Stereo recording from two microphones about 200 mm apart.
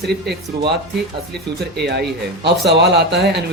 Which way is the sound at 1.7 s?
55° right (ahead or behind).